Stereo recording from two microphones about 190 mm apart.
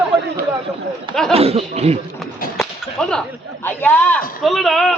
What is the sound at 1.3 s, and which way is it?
Speech, 30° right (ahead or behind).